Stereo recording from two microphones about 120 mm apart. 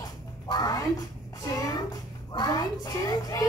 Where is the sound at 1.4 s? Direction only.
30° left (ahead or behind).